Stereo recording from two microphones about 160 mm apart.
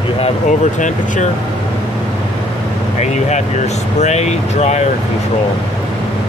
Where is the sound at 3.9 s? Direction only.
45° left (ahead or behind).